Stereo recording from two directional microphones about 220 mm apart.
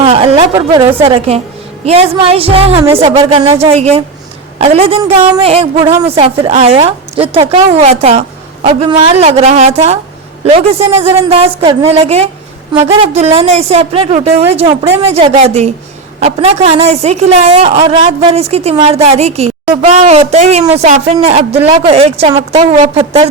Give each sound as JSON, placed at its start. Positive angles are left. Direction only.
{"t": 0.0, "sound": "a sound", "side_deg": -25}
{"t": 0.5, "sound": "speech", "side_deg": -10}
{"t": 1.0, "sound": "speech", "side_deg": -25}